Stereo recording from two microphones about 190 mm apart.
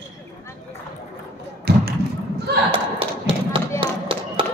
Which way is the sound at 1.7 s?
55° right (ahead or behind).